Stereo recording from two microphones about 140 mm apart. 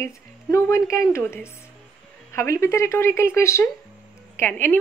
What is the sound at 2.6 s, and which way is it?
Speech, 20° left (ahead or behind).